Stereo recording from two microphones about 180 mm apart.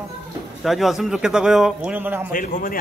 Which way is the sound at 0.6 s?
Centre (ahead or behind).